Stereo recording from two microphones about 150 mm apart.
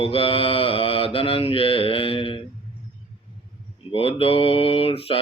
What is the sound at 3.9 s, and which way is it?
Mantra, 40° left (ahead or behind).